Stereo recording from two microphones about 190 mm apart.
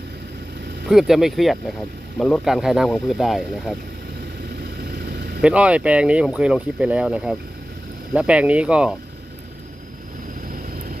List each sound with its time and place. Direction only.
0.8 s speech: centre (ahead or behind)
4.8 s vehicle: 60° right (ahead or behind)
5.4 s speech: 5° right (ahead or behind)